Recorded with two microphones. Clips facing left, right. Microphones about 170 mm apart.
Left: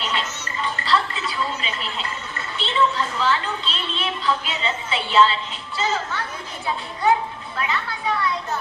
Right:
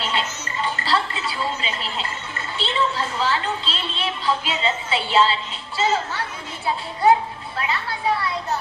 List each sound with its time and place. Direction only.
0.0 s music: 30° right (ahead or behind)
2.6 s a woman's voice: 30° right (ahead or behind)
7.5 s a child's voice: 30° right (ahead or behind)